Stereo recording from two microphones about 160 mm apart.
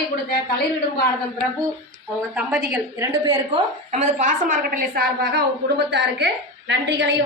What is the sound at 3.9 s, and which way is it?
A woman's voice, 50° right (ahead or behind).